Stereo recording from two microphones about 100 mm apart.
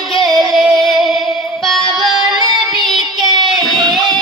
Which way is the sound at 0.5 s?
Centre (ahead or behind).